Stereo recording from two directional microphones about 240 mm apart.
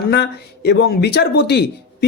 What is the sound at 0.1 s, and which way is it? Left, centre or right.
Speech, left.